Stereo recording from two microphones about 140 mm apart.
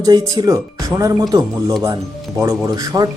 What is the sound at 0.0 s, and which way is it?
Speech, 25° right (ahead or behind).